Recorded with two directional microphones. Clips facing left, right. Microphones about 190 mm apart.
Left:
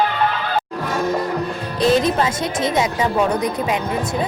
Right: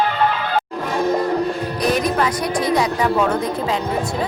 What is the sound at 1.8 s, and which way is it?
A woman's voice, 25° left (ahead or behind).